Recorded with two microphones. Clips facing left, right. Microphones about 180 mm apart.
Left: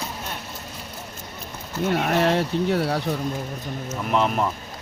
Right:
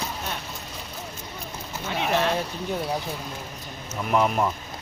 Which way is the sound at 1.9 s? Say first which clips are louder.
Left 4 dB; 60° left (ahead or behind).